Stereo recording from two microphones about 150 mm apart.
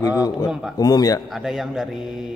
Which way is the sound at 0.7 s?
25° left (ahead or behind).